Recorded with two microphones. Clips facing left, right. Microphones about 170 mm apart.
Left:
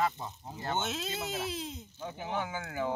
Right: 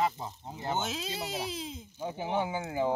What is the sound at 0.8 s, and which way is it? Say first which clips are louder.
Speech: even; centre (ahead or behind).